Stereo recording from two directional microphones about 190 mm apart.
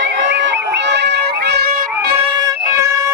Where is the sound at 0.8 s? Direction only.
65° right (ahead or behind).